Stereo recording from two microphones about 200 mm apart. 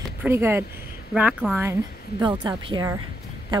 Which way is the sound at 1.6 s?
15° right (ahead or behind).